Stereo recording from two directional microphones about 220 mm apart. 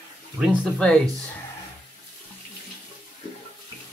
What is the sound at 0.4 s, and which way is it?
Speech, centre (ahead or behind).